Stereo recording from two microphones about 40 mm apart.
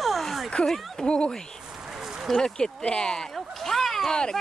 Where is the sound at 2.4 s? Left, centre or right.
Centre.